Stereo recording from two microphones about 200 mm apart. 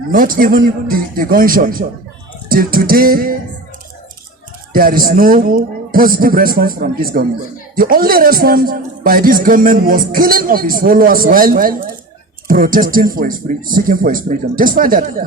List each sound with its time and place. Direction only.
0.1 s a man's voice: 45° right (ahead or behind)
4.7 s a man's voice: 45° right (ahead or behind)